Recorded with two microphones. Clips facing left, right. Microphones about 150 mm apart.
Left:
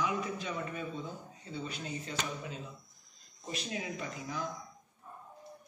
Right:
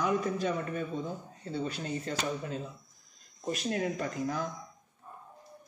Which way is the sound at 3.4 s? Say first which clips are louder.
Right 8 dB; 50° right (ahead or behind).